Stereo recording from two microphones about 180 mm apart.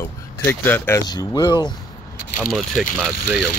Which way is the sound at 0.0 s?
10° left (ahead or behind).